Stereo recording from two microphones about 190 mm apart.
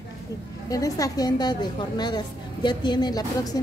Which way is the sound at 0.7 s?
20° left (ahead or behind).